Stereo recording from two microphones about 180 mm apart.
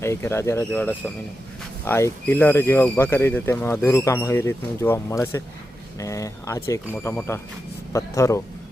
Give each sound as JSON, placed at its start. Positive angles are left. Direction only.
{"t": 0.0, "sound": "speech", "side_deg": 15}